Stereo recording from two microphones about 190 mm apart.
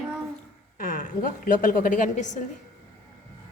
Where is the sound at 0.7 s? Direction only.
45° left (ahead or behind).